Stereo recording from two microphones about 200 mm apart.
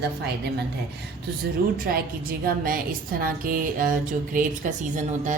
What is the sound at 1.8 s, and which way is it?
A woman's voice, 50° right (ahead or behind).